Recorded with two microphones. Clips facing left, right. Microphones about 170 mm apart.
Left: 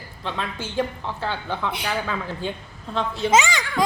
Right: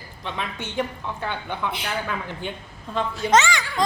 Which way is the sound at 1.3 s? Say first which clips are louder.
Left 2 dB; 15° right (ahead or behind).